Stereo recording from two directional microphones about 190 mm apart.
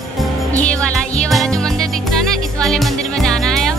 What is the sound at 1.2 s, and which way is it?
Music, centre (ahead or behind).